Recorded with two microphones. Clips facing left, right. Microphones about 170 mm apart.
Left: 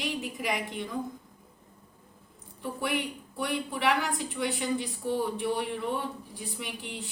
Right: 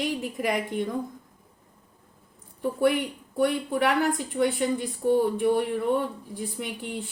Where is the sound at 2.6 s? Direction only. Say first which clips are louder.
Right 8 dB; 50° right (ahead or behind).